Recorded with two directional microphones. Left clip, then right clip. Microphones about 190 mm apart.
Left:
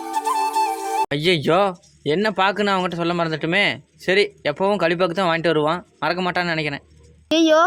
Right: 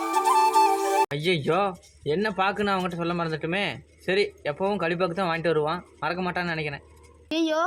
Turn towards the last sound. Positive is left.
turn(degrees=25)  # may be behind; listen again after turning